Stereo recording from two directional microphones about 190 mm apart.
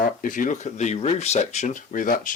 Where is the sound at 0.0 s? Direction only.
45° left (ahead or behind).